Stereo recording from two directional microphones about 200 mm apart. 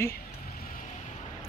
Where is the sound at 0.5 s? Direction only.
45° left (ahead or behind).